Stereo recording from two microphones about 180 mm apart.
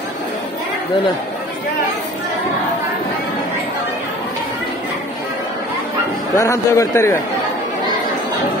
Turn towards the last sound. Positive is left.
turn(degrees=15)  # may be behind; listen again after turning